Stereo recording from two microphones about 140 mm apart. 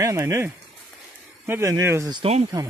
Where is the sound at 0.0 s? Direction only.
20° right (ahead or behind).